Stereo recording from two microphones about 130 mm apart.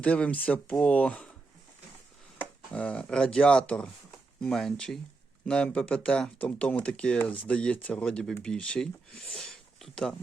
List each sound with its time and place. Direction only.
0.0 s speech: 10° left (ahead or behind)
2.7 s speech: 10° left (ahead or behind)